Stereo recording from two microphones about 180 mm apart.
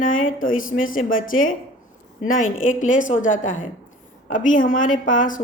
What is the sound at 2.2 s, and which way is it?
A woman's voice, 50° left (ahead or behind).